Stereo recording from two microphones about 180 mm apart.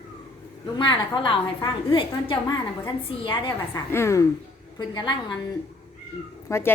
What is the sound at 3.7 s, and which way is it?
Speech, 15° left (ahead or behind).